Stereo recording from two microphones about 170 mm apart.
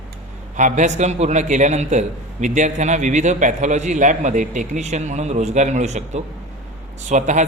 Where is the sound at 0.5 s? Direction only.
45° right (ahead or behind).